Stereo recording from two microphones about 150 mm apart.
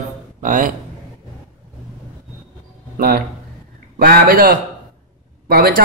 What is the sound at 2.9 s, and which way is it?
A man's voice, 70° right (ahead or behind).